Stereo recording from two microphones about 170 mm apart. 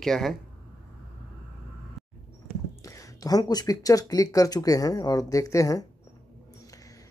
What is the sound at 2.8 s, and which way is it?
Speech, 20° left (ahead or behind).